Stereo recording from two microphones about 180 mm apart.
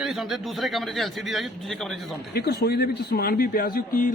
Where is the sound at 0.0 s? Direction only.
Centre (ahead or behind).